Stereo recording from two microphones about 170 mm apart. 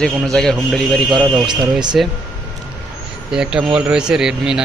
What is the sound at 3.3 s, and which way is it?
Speech, 5° right (ahead or behind).